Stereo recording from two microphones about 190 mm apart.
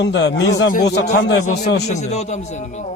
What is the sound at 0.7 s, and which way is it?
Speech, 60° left (ahead or behind).